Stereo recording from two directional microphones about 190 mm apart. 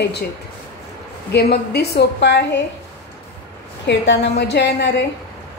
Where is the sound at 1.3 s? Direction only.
60° left (ahead or behind).